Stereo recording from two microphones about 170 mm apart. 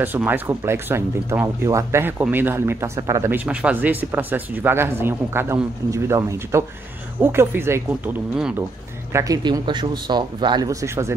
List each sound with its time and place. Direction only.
0.0 s speech: 10° right (ahead or behind)
9.1 s speech: 25° right (ahead or behind)